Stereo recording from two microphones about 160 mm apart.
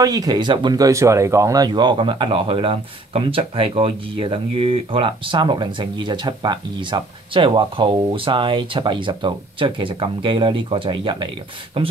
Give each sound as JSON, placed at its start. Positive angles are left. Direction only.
{"t": 0.0, "sound": "speech", "side_deg": -20}